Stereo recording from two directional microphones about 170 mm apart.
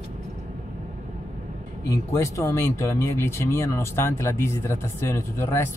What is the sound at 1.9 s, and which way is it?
Speech, 15° left (ahead or behind).